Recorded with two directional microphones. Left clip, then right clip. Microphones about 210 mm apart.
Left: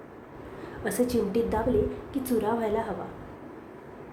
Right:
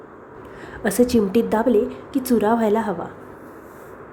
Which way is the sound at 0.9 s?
35° right (ahead or behind).